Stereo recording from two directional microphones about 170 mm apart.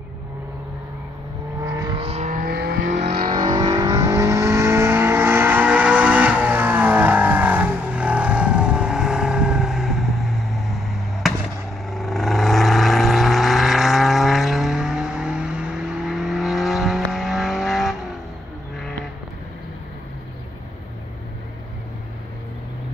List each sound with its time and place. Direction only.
1.6 s vehicle: 20° right (ahead or behind)
2.0 s vehicle: 40° right (ahead or behind); by 2.9 s 65° right (ahead or behind)
3.3 s vehicle: 25° right (ahead or behind); by 17.9 s centre (ahead or behind)